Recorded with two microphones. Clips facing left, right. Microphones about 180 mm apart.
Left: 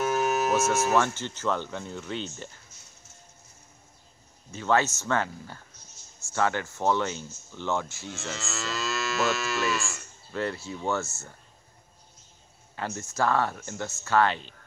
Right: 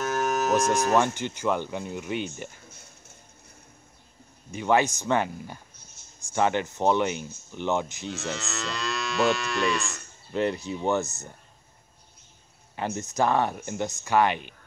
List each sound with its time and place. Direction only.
0.0 s a sound: 10° left (ahead or behind)
0.9 s speech: 15° right (ahead or behind)
4.5 s speech: 15° right (ahead or behind)
8.1 s moo: centre (ahead or behind)
10.3 s speech: 20° right (ahead or behind)
12.7 s speech: 20° right (ahead or behind)